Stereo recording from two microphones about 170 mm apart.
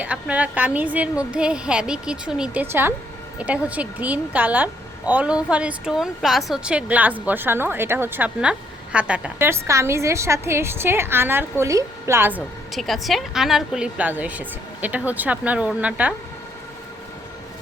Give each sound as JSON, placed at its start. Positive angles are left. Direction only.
{"t": 0.0, "sound": "a woman's voice", "side_deg": -10}
{"t": 12.7, "sound": "a woman's voice", "side_deg": 0}